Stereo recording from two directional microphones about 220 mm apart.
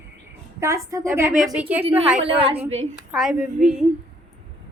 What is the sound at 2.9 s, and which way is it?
Speech, centre (ahead or behind).